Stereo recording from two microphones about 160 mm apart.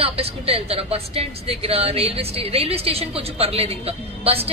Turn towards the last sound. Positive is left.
turn(degrees=-40)  # may be behind; listen again after turning